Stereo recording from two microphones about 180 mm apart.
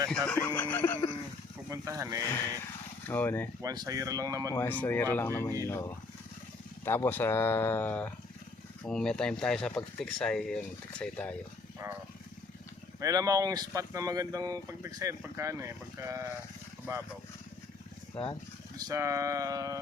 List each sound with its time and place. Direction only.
0.3 s speech: 10° left (ahead or behind)
1.7 s speech: 15° right (ahead or behind)
2.3 s speech: 15° left (ahead or behind)
3.6 s speech: 20° right (ahead or behind)
4.5 s speech: 10° left (ahead or behind)
13.0 s speech: 20° right (ahead or behind)
18.8 s speech: 20° right (ahead or behind)